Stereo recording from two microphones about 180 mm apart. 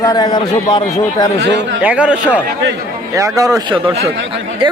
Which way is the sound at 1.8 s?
5° right (ahead or behind).